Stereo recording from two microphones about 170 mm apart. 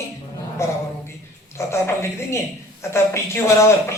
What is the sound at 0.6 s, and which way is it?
Speech, 15° left (ahead or behind).